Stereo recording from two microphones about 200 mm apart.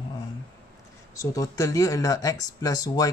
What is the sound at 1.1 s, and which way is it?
Speech, 15° left (ahead or behind).